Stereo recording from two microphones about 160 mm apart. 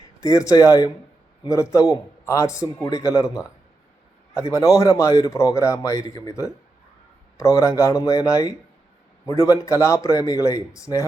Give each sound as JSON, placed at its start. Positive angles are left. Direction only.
{"t": 0.2, "sound": "speech", "side_deg": 20}
{"t": 4.4, "sound": "speech", "side_deg": 20}